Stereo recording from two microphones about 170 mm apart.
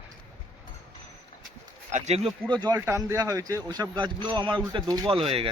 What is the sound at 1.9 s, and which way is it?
Speech, 45° right (ahead or behind).